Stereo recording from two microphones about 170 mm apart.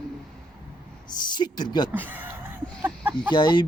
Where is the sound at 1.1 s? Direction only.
25° left (ahead or behind).